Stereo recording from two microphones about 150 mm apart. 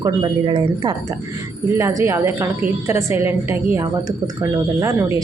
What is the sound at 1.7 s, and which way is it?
A woman's voice, 20° right (ahead or behind).